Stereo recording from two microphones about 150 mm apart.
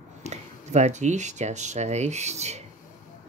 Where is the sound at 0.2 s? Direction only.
50° right (ahead or behind).